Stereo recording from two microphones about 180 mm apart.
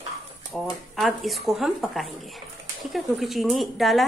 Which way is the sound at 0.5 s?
Centre (ahead or behind).